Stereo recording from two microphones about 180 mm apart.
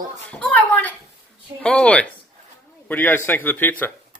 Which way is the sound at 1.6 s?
5° left (ahead or behind).